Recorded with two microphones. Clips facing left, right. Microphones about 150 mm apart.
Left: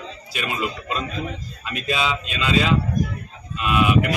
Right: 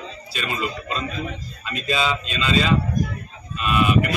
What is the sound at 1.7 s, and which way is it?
Speech, 10° left (ahead or behind).